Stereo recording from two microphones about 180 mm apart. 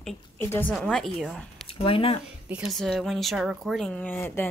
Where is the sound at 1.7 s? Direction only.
30° left (ahead or behind).